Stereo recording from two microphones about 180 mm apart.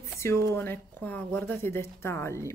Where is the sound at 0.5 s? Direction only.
10° left (ahead or behind).